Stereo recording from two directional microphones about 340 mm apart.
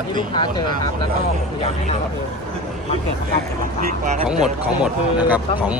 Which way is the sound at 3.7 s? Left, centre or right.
Right.